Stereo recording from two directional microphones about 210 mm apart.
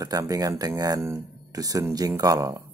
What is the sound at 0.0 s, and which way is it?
Speech, 15° right (ahead or behind).